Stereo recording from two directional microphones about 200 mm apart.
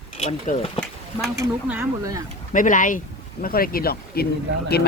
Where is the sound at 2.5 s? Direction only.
40° left (ahead or behind).